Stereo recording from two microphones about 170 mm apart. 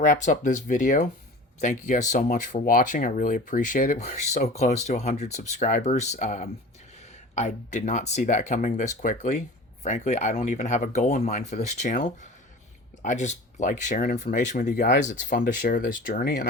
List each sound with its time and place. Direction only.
0.0 s speech: 45° left (ahead or behind)